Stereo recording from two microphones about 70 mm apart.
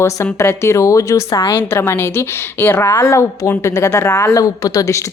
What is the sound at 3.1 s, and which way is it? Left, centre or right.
A woman's voice, left.